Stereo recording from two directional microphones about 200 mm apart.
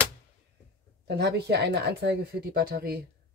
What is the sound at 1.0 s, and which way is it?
Speech, 55° right (ahead or behind).